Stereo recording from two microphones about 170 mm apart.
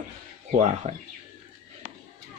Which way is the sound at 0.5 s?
40° right (ahead or behind).